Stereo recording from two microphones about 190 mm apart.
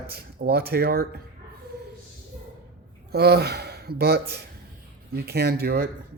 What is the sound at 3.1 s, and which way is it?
Speech, 55° right (ahead or behind).